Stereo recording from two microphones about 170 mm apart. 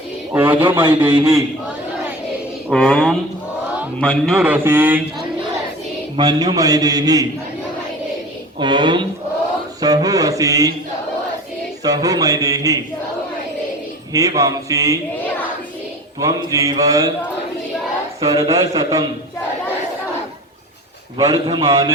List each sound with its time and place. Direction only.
0.3 s speech: 10° right (ahead or behind)
0.9 s a man's voice: 25° right (ahead or behind)
2.6 s speech: 5° left (ahead or behind)
4.4 s speech: 10° right (ahead or behind)
6.1 s a man's voice: 25° right (ahead or behind)
8.5 s a man's voice: 25° right (ahead or behind)
11.8 s a man's voice: 20° right (ahead or behind)
14.1 s a man's voice: 20° right (ahead or behind)
16.2 s a man's voice: 20° right (ahead or behind)
18.3 s a man's voice: 35° right (ahead or behind)
21.2 s a man's voice: 25° right (ahead or behind)